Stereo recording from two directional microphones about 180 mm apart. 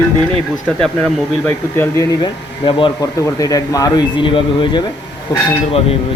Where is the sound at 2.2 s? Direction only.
25° left (ahead or behind).